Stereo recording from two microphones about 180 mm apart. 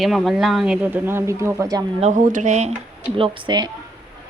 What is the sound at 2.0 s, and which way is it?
Speech, 45° right (ahead or behind).